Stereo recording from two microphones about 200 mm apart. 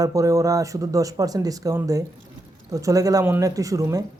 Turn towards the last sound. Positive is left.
turn(degrees=-15)  # may be behind; listen again after turning